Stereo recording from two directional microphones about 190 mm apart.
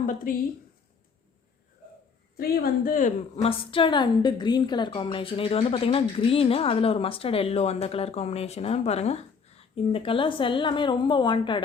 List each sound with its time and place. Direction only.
0.0 s speech: 45° left (ahead or behind)
2.4 s speech: 50° left (ahead or behind)
3.4 s a woman's voice: 30° left (ahead or behind)